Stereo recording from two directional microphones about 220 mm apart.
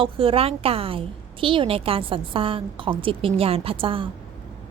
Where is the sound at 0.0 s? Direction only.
25° right (ahead or behind).